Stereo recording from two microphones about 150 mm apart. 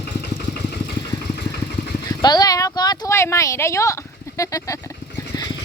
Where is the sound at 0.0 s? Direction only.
90° left.